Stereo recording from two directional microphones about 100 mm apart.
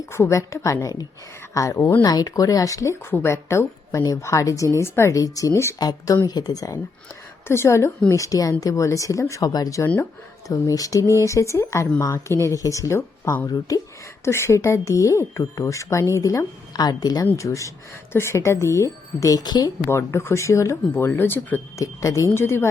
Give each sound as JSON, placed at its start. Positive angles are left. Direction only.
{"t": 0.0, "sound": "speech", "side_deg": 30}
{"t": 7.4, "sound": "speech", "side_deg": 25}
{"t": 9.8, "sound": "speech", "side_deg": 20}
{"t": 10.5, "sound": "speech", "side_deg": 35}
{"t": 19.9, "sound": "speech", "side_deg": 25}
{"t": 21.8, "sound": "speech", "side_deg": 30}